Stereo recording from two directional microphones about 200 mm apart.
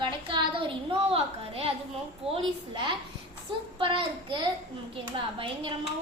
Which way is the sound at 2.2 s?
25° right (ahead or behind).